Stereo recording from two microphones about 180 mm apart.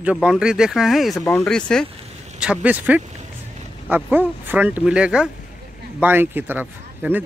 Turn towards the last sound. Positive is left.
turn(degrees=-10)  # may be behind; listen again after turning